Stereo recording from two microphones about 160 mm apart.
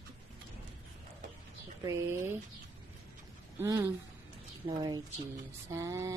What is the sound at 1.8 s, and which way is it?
Speech, 15° right (ahead or behind).